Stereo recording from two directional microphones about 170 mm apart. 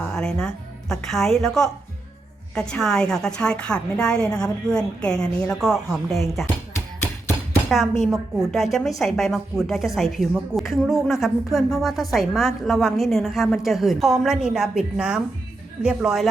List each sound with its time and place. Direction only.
0.1 s a woman's voice: 5° left (ahead or behind)
6.4 s a sound: 15° left (ahead or behind)
7.7 s a woman's voice: centre (ahead or behind)